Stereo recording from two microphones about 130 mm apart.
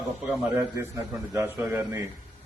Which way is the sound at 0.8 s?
20° right (ahead or behind).